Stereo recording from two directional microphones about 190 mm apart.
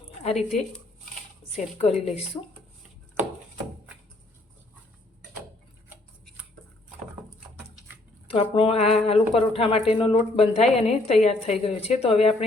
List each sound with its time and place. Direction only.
0.2 s speech: 35° left (ahead or behind)
1.5 s speech: 35° left (ahead or behind)
8.3 s speech: 30° left (ahead or behind)